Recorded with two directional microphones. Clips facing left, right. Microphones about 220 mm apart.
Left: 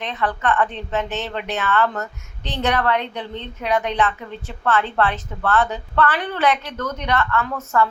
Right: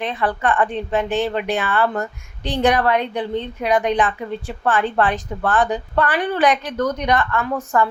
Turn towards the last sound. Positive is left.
turn(degrees=-15)  # may be behind; listen again after turning